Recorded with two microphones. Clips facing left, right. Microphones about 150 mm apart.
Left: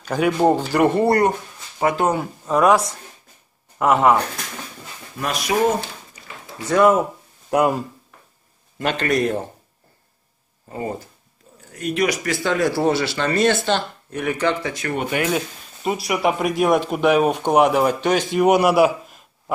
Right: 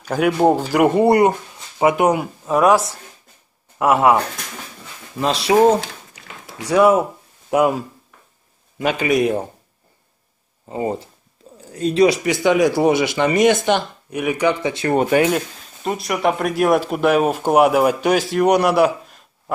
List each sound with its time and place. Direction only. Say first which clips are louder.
0.0 s speech: right 2 dB; 5° right (ahead or behind)
5.2 s speech: right 6 dB; 25° right (ahead or behind)
5.8 s a sound: right 2 dB; 85° right
6.6 s speech: right 2 dB; 10° right (ahead or behind)
10.7 s speech: right 5 dB; 20° right (ahead or behind)
12.2 s speech: right 5 dB; 20° right (ahead or behind)
14.9 s speech: right 8 dB; 40° right (ahead or behind)
15.3 s speech: right 1 dB; 5° left (ahead or behind)